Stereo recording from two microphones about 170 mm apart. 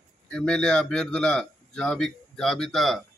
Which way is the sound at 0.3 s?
5° left (ahead or behind).